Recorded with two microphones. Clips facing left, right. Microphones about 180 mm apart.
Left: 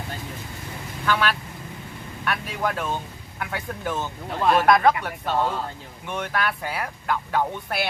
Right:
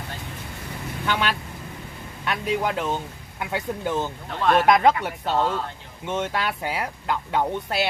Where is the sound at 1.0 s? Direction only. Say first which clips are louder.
Left 2 dB; 20° right (ahead or behind).